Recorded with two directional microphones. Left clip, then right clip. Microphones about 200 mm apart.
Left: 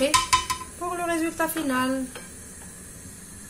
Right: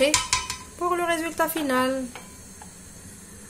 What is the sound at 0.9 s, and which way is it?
Speech, 50° right (ahead or behind).